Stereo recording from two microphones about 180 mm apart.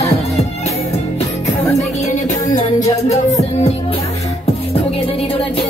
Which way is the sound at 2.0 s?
40° left (ahead or behind).